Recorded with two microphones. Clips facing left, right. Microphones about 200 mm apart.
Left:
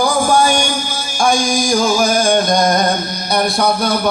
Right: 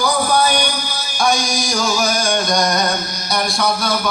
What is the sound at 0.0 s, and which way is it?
Music, 45° left (ahead or behind).